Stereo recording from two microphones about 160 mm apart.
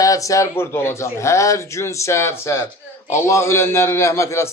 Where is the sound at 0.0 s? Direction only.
20° left (ahead or behind).